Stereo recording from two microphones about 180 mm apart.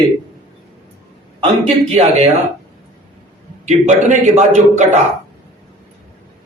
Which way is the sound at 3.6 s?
40° right (ahead or behind).